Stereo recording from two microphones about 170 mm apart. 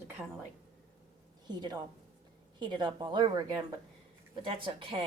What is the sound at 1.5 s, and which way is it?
A woman's voice, 25° right (ahead or behind).